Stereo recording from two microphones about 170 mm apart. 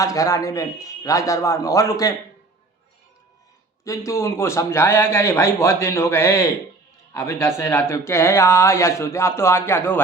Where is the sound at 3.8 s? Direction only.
20° left (ahead or behind).